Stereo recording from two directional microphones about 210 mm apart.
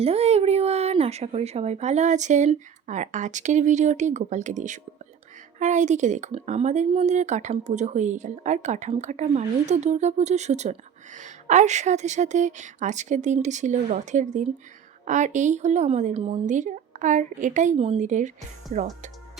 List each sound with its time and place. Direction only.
0.0 s speech: 30° right (ahead or behind)